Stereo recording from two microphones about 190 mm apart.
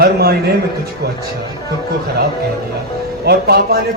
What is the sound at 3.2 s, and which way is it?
Speech, 60° right (ahead or behind).